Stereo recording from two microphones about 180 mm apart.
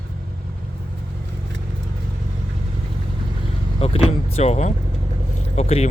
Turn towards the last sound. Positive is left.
turn(degrees=35)  # may be behind; listen again after turning